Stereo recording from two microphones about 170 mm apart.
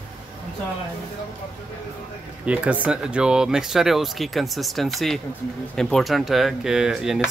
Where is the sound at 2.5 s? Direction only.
5° right (ahead or behind).